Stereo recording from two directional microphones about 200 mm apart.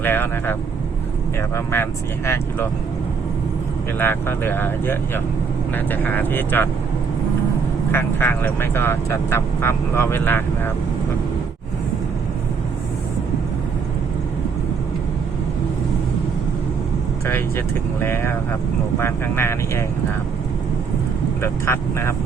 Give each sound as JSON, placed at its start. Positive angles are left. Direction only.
{"t": 0.0, "sound": "speech", "side_deg": 10}
{"t": 1.5, "sound": "speech", "side_deg": 10}
{"t": 3.9, "sound": "speech", "side_deg": 10}
{"t": 7.9, "sound": "speech", "side_deg": 10}
{"t": 18.0, "sound": "speech", "side_deg": 10}
{"t": 21.4, "sound": "speech", "side_deg": 15}